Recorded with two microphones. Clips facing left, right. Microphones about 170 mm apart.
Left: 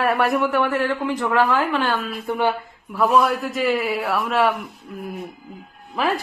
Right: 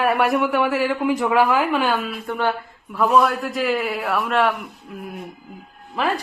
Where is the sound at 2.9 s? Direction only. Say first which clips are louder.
Even; centre (ahead or behind).